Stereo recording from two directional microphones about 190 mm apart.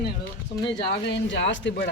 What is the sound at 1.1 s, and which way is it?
Speech, 65° left (ahead or behind).